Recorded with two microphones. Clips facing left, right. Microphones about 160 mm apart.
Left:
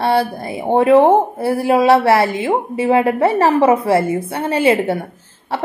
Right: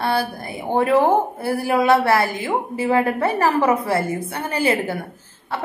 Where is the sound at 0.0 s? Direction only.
25° left (ahead or behind).